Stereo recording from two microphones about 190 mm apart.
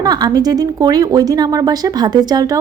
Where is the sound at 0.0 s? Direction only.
20° right (ahead or behind).